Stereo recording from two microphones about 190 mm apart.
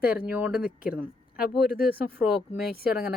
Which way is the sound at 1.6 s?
55° left (ahead or behind).